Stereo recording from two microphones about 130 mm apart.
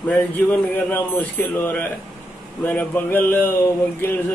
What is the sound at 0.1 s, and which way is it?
A man's voice, 10° left (ahead or behind).